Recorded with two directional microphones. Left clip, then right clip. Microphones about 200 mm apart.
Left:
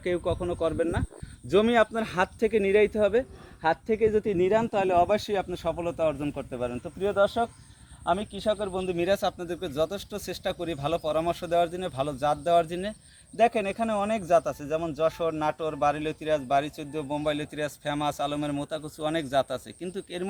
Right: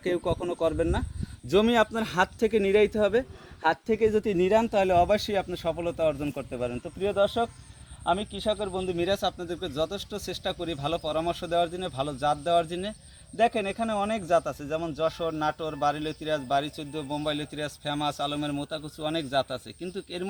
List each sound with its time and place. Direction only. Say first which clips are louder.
0.0 s speech: even; 55° right (ahead or behind); by 7.5 s 10° right (ahead or behind)
8.0 s speech: even; 5° left (ahead or behind)